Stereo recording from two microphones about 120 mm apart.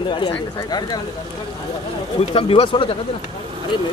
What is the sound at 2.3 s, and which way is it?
Speech, 50° left (ahead or behind).